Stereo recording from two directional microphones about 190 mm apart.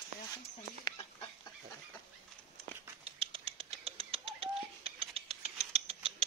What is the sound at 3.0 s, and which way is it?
Bird, 30° right (ahead or behind).